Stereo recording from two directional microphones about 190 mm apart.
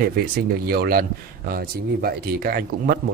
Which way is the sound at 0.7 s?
55° right (ahead or behind).